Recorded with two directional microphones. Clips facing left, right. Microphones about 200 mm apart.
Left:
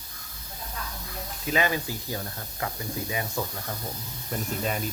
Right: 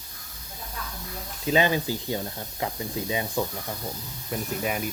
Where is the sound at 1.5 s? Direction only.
25° right (ahead or behind).